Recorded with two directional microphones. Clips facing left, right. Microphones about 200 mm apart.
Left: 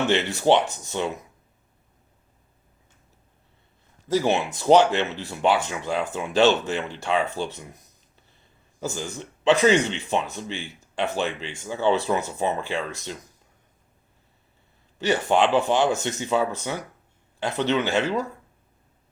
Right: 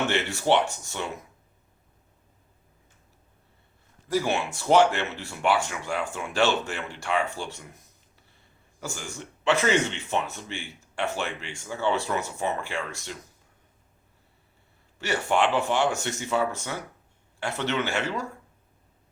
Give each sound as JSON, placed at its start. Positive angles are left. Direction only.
{"t": 0.1, "sound": "speech", "side_deg": 20}
{"t": 4.1, "sound": "speech", "side_deg": 20}
{"t": 8.8, "sound": "speech", "side_deg": 20}
{"t": 14.9, "sound": "speech", "side_deg": 20}